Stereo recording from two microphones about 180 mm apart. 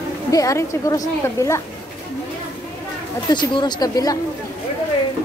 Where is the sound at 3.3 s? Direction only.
25° left (ahead or behind).